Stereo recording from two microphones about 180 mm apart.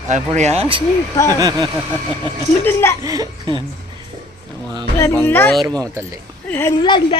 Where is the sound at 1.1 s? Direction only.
15° left (ahead or behind).